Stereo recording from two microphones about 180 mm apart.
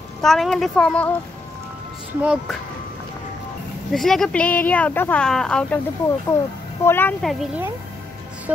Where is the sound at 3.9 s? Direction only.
Centre (ahead or behind).